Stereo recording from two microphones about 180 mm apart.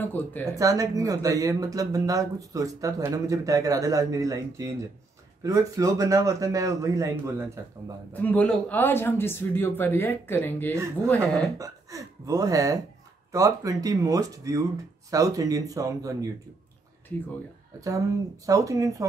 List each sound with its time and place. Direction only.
0.0 s speech: 10° left (ahead or behind)
0.6 s speech: 20° right (ahead or behind)
8.1 s speech: 10° left (ahead or behind)
11.5 s speech: 20° right (ahead or behind)
17.7 s speech: 20° right (ahead or behind)